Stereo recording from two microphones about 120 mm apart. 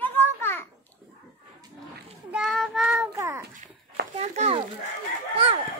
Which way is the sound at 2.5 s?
Centre (ahead or behind).